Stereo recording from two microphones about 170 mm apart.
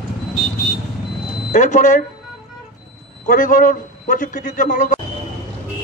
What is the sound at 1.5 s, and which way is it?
Speech, 45° left (ahead or behind).